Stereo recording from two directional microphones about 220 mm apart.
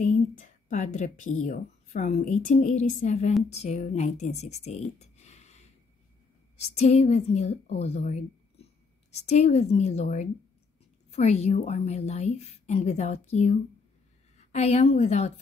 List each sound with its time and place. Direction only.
0.1 s a woman's voice: 35° left (ahead or behind)